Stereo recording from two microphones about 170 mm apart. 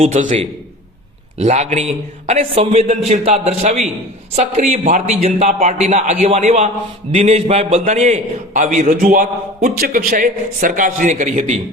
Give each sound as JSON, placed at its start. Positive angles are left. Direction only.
{"t": 0.0, "sound": "a man's voice", "side_deg": -40}